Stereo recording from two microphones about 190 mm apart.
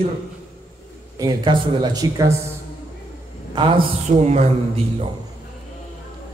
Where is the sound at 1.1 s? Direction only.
20° right (ahead or behind).